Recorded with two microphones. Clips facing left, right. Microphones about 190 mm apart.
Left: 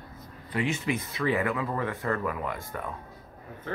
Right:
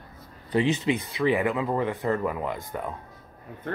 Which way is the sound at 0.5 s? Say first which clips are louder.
Right 5 dB; 25° right (ahead or behind).